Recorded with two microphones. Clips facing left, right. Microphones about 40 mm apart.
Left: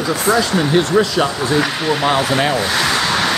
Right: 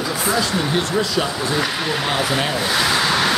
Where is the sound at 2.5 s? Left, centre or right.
Centre.